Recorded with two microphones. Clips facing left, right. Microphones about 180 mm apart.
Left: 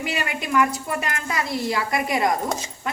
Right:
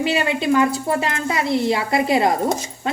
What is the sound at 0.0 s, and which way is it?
A woman's voice, 30° right (ahead or behind).